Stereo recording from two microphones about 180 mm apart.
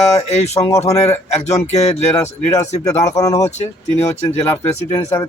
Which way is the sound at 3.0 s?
20° left (ahead or behind).